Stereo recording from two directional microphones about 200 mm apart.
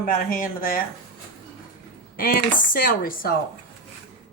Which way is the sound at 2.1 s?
45° left (ahead or behind).